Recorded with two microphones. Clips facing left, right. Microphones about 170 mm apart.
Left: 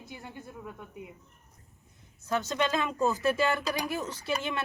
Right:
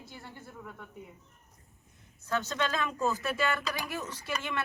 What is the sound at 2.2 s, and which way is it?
A woman's voice, 15° left (ahead or behind).